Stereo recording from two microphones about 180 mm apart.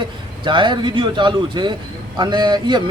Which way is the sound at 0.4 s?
25° right (ahead or behind).